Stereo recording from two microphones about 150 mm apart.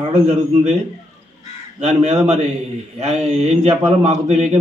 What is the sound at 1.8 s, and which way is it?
Speech, 50° right (ahead or behind).